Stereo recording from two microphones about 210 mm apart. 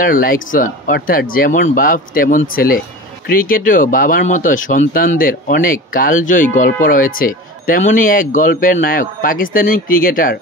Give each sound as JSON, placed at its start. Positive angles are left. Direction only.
{"t": 0.0, "sound": "speech", "side_deg": 40}